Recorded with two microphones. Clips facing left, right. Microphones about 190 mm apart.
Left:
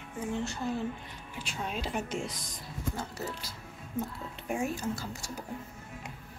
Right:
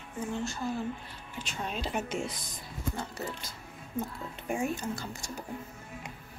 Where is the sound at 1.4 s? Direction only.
5° left (ahead or behind).